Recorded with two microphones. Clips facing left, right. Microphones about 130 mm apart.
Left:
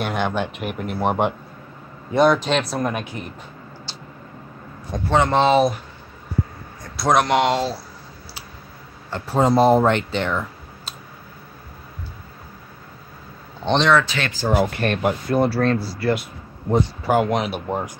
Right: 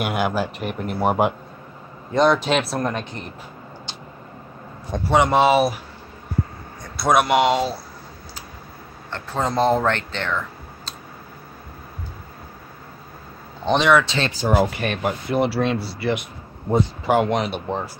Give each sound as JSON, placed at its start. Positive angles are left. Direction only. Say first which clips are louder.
{"t": 0.0, "sound": "speech", "louder": "right 1 dB", "side_deg": -5}
{"t": 2.9, "sound": "speech", "louder": "left 1 dB", "side_deg": 10}
{"t": 3.9, "sound": "vehicle", "louder": "right 1 dB", "side_deg": -20}
{"t": 4.9, "sound": "speech", "louder": "right 1 dB", "side_deg": -10}
{"t": 7.0, "sound": "speech", "louder": "even", "side_deg": -5}
{"t": 9.1, "sound": "speech", "louder": "left 6 dB", "side_deg": 10}
{"t": 13.7, "sound": "speech", "louder": "even", "side_deg": -10}
{"t": 14.0, "sound": "speech", "louder": "right 2 dB", "side_deg": -30}
{"t": 14.5, "sound": "speech", "louder": "left 1 dB", "side_deg": 0}